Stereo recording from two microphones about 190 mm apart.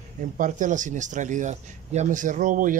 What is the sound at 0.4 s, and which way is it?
Speech, 40° right (ahead or behind).